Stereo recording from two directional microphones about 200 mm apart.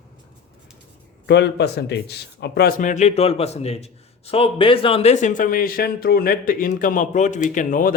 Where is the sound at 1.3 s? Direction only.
60° left (ahead or behind).